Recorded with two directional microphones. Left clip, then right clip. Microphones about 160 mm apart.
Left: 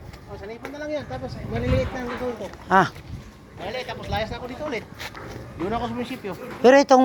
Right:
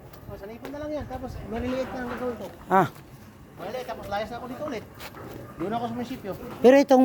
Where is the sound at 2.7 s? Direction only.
10° right (ahead or behind).